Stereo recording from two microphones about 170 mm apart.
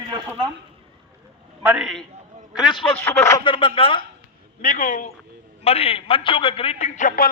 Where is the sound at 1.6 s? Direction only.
5° right (ahead or behind).